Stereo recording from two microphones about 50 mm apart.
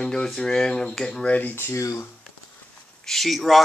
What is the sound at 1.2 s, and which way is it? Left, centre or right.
Speech, left.